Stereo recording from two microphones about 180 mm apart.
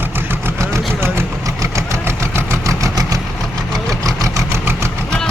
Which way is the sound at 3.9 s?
20° right (ahead or behind).